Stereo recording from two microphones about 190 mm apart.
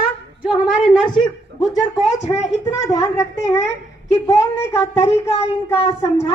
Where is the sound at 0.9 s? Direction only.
25° left (ahead or behind).